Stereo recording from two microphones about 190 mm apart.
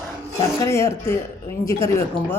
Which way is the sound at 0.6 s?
15° left (ahead or behind).